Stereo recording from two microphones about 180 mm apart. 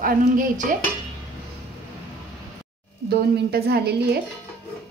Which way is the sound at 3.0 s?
60° right (ahead or behind).